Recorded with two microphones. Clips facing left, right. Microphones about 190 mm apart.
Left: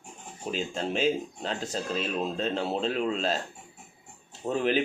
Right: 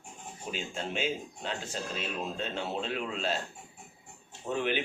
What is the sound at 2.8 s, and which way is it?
Speech, 40° left (ahead or behind).